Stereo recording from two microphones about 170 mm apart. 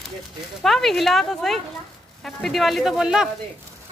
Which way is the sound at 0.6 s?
Centre (ahead or behind).